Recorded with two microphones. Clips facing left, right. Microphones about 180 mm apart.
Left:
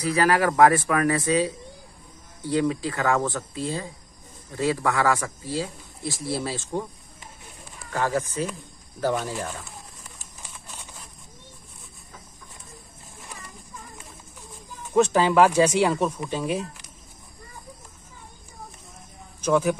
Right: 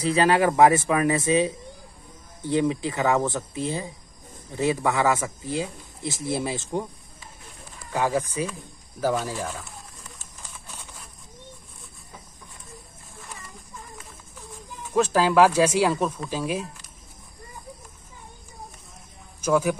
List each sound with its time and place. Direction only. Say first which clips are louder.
0.0 s a man's voice: right 1 dB; 25° right (ahead or behind)
7.9 s speech: right 1 dB; 15° right (ahead or behind)
9.0 s speech: even; centre (ahead or behind)
15.0 s speech: even; 5° right (ahead or behind)
19.4 s speech: even; 10° right (ahead or behind)